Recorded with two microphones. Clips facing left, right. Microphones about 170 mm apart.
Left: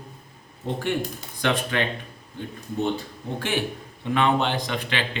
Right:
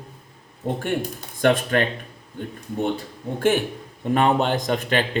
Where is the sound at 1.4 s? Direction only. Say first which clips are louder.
Right 6 dB; 50° right (ahead or behind).